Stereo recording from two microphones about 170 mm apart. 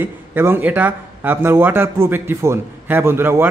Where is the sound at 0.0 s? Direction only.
15° right (ahead or behind).